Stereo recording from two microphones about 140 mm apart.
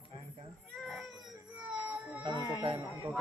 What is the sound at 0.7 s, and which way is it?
Baby cry, centre (ahead or behind).